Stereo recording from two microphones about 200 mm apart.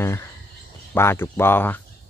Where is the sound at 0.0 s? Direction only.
15° left (ahead or behind).